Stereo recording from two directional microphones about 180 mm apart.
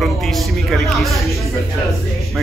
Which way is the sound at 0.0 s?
Centre (ahead or behind).